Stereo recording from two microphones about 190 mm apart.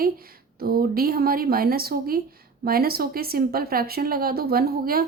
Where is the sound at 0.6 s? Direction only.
50° right (ahead or behind).